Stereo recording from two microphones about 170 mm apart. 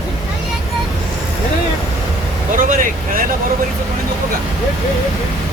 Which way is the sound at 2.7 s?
55° right (ahead or behind).